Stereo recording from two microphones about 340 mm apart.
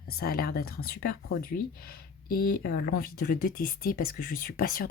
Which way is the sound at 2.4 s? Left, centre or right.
Left.